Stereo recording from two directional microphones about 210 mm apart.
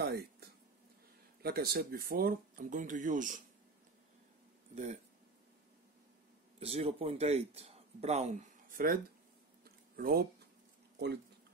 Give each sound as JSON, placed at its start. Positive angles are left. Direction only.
{"t": 0.0, "sound": "a sound", "side_deg": -50}
{"t": 1.4, "sound": "speech", "side_deg": -45}
{"t": 4.7, "sound": "speech", "side_deg": -35}
{"t": 6.6, "sound": "a man's voice", "side_deg": -30}